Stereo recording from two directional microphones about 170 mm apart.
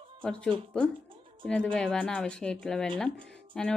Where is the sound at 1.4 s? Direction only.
5° left (ahead or behind).